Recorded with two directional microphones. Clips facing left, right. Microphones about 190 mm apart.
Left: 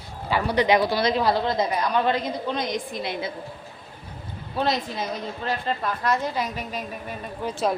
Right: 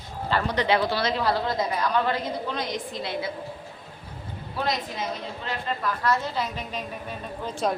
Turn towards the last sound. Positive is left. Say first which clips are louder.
# left 2 dB
turn(degrees=10)  # may be behind; listen again after turning